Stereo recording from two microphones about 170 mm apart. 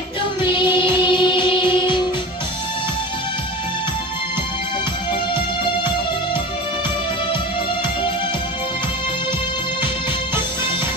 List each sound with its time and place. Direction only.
1.0 s music: 30° left (ahead or behind)